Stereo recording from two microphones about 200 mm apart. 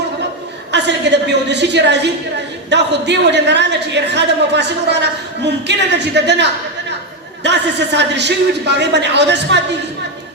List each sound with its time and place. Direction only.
0.7 s a woman's voice: 60° right (ahead or behind)